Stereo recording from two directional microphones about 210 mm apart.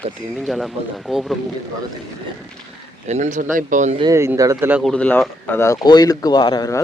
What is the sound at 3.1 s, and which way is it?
Speech, 35° right (ahead or behind).